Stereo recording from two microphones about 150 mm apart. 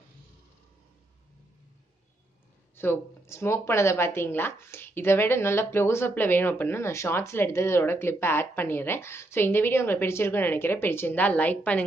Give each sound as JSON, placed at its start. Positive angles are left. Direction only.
{"t": 2.7, "sound": "speech", "side_deg": 15}